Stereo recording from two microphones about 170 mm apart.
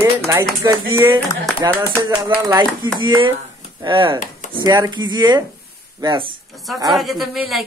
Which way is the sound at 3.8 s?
30° right (ahead or behind).